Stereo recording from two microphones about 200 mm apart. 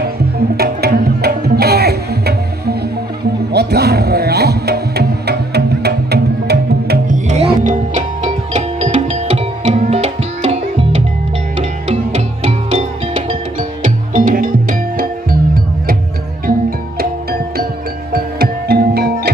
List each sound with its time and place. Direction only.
0.6 s music: 50° right (ahead or behind)
7.2 s music: 35° right (ahead or behind)
17.0 s music: 50° right (ahead or behind)